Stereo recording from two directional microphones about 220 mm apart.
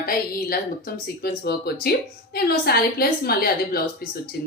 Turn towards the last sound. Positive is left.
turn(degrees=45)  # may be behind; listen again after turning